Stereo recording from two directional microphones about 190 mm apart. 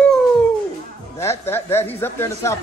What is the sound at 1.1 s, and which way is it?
A woman's voice, 15° left (ahead or behind).